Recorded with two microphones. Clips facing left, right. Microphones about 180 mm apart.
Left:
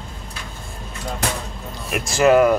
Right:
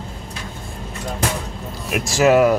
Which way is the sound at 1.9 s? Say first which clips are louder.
Even; centre (ahead or behind).